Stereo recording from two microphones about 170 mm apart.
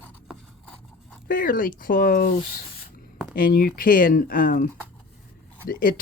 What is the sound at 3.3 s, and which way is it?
Speech, 60° left (ahead or behind).